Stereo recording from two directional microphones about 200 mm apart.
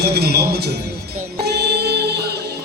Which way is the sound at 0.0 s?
55° right (ahead or behind).